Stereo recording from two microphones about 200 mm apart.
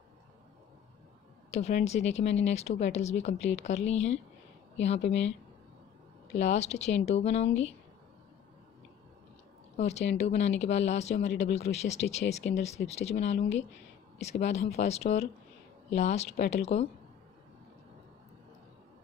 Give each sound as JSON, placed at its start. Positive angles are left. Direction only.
{"t": 1.5, "sound": "speech", "side_deg": 35}
{"t": 6.3, "sound": "speech", "side_deg": 35}
{"t": 9.8, "sound": "speech", "side_deg": 35}
{"t": 13.4, "sound": "speech", "side_deg": 65}
{"t": 14.2, "sound": "speech", "side_deg": 35}